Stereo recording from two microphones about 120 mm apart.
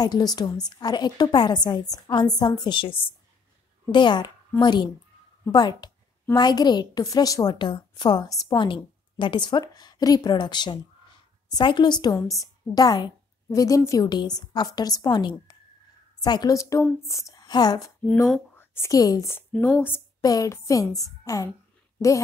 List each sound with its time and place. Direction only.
0.0 s a woman's voice: 35° left (ahead or behind)
8.6 s a woman's voice: 45° left (ahead or behind); by 19.4 s 25° left (ahead or behind)
19.5 s speech: 10° left (ahead or behind)
20.2 s a woman's voice: 30° left (ahead or behind)